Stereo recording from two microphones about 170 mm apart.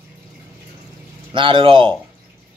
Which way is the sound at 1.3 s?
30° right (ahead or behind).